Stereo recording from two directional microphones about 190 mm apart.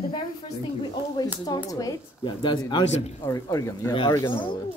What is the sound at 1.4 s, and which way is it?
Speech, 20° left (ahead or behind).